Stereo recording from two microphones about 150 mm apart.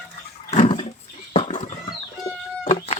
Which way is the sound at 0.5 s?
40° left (ahead or behind).